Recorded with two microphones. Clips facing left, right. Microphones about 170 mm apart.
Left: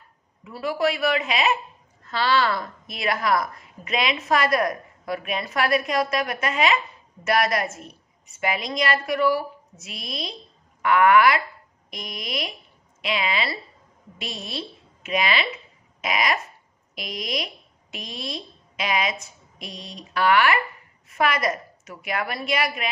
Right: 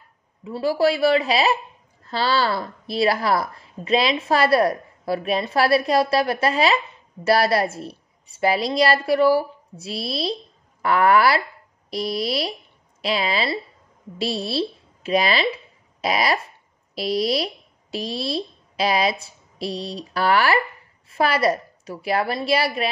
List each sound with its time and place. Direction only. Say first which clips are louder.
0.4 s a woman's voice: right 5 dB; 30° right (ahead or behind)